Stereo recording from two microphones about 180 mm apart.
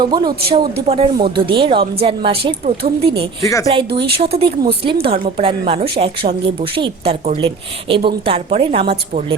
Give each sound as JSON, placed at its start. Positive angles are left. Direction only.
{"t": 0.0, "sound": "speech", "side_deg": -25}
{"t": 3.4, "sound": "speech", "side_deg": 20}
{"t": 3.9, "sound": "a woman's voice", "side_deg": -30}